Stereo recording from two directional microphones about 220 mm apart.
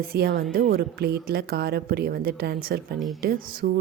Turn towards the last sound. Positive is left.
turn(degrees=-40)  # may be behind; listen again after turning